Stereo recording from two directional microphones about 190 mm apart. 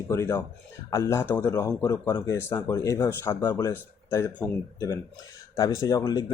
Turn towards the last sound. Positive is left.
turn(degrees=20)  # may be behind; listen again after turning